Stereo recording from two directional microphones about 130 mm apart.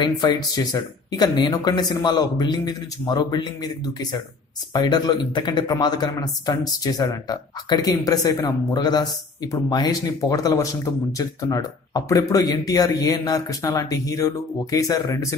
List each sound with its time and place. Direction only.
0.0 s speech: 35° left (ahead or behind)